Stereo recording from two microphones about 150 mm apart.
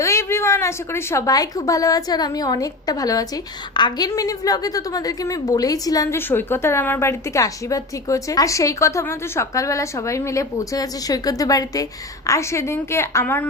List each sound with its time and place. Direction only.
0.0 s a woman's voice: 20° left (ahead or behind)